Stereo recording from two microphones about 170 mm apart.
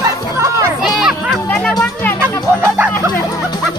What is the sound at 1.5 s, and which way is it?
Music, 5° left (ahead or behind).